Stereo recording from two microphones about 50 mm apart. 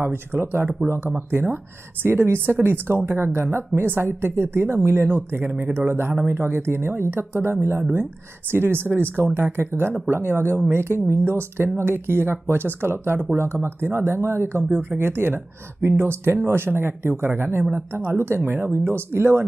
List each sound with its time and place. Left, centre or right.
0.0 s speech: right
1.0 s speech: right
5.0 s speech: right